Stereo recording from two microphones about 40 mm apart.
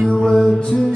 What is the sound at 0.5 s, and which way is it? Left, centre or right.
Music, left.